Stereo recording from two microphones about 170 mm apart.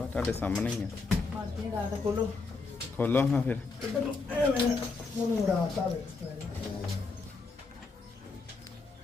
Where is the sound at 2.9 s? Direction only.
10° left (ahead or behind).